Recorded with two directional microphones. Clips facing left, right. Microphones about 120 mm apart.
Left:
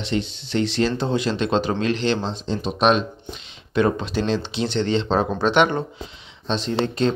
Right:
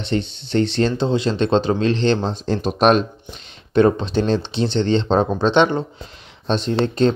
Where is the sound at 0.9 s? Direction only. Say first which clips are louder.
Right 3 dB; 25° right (ahead or behind).